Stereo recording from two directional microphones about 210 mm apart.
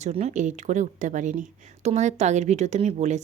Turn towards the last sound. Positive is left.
turn(degrees=-35)  # may be behind; listen again after turning